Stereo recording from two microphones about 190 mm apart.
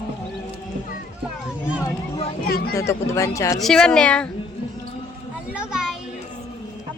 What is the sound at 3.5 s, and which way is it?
Speech, centre (ahead or behind).